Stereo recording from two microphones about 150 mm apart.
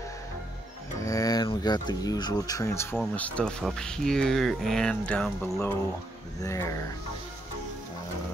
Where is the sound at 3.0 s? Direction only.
5° left (ahead or behind).